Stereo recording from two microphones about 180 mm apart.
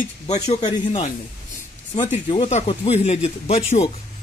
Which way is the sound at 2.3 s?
35° left (ahead or behind).